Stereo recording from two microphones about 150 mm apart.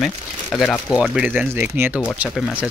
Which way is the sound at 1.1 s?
10° right (ahead or behind).